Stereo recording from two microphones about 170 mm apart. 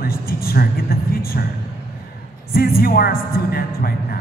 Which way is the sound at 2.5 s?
60° left (ahead or behind).